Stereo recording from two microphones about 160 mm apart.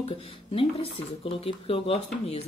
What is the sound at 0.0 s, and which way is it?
Speech, 35° left (ahead or behind).